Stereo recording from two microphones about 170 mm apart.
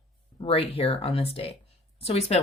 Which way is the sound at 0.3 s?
35° left (ahead or behind).